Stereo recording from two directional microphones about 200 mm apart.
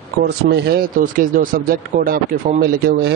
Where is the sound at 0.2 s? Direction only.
55° right (ahead or behind).